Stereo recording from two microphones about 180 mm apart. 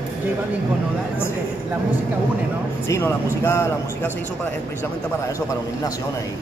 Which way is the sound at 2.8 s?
15° left (ahead or behind).